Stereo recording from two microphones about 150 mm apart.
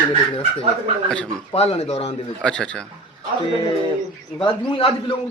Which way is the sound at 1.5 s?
40° left (ahead or behind).